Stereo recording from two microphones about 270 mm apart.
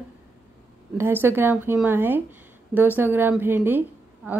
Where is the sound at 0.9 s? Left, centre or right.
Centre.